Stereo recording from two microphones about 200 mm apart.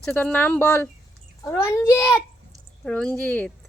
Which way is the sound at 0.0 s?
5° left (ahead or behind).